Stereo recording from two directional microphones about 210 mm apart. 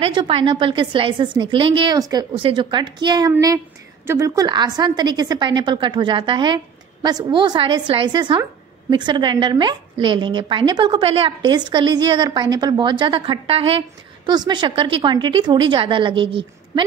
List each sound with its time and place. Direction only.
0.0 s a woman's voice: 25° right (ahead or behind)